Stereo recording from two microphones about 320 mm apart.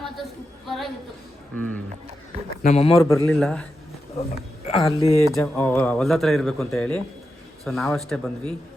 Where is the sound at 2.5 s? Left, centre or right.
Left.